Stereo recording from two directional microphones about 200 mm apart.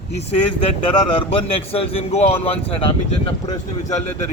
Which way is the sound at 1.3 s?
30° left (ahead or behind).